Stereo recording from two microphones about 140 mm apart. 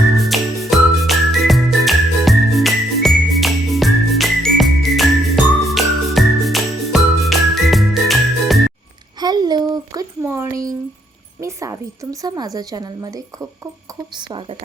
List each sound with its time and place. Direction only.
0.2 s music: centre (ahead or behind)
9.2 s a sound: 30° right (ahead or behind)
12.2 s a woman's voice: 25° right (ahead or behind)